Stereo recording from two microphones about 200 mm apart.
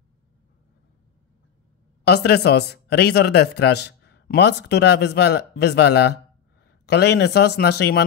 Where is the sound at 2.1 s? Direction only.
55° left (ahead or behind).